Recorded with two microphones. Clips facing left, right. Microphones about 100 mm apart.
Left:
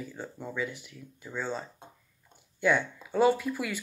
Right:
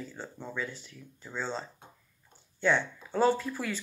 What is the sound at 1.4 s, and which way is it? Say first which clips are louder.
Speech: left 1 dB; 30° right (ahead or behind).